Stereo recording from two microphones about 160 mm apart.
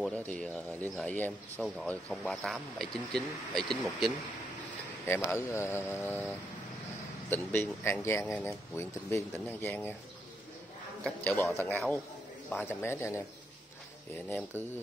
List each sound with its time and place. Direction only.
0.0 s speech: 10° left (ahead or behind)
5.0 s speech: 15° left (ahead or behind)
11.5 s speech: 10° left (ahead or behind)